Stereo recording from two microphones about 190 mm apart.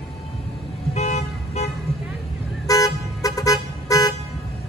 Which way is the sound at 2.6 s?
20° left (ahead or behind).